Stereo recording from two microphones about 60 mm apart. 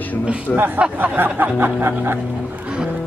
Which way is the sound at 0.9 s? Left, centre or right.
Right.